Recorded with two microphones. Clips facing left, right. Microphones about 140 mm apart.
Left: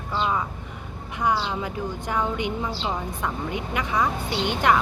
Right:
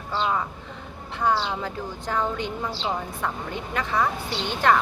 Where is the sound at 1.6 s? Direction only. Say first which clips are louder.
Left 2 dB; 20° left (ahead or behind).